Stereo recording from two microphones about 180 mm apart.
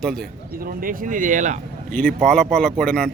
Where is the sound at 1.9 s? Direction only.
10° left (ahead or behind).